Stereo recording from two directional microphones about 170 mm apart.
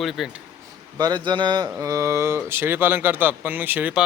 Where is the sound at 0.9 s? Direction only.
25° right (ahead or behind).